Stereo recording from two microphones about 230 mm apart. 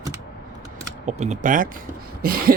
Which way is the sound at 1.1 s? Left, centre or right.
Right.